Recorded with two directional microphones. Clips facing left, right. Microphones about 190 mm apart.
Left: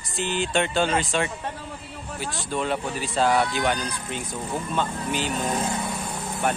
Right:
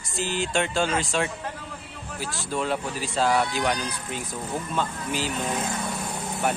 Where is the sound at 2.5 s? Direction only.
Centre (ahead or behind).